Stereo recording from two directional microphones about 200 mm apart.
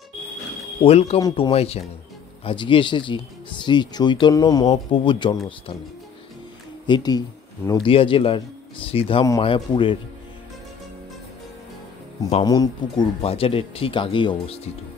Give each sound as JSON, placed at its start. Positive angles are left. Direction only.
{"t": 0.8, "sound": "speech", "side_deg": 30}
{"t": 6.9, "sound": "speech", "side_deg": 20}
{"t": 12.4, "sound": "speech", "side_deg": 20}